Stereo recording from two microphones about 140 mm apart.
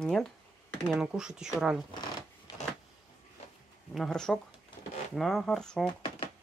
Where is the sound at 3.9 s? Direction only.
5° left (ahead or behind).